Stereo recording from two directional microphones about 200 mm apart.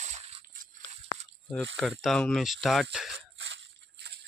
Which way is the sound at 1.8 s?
Centre (ahead or behind).